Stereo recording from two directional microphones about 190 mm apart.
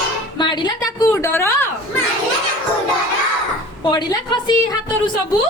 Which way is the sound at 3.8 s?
25° left (ahead or behind).